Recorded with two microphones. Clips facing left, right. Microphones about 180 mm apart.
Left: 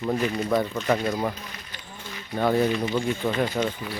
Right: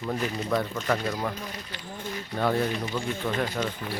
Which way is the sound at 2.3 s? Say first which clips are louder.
Left 4 dB; 10° left (ahead or behind).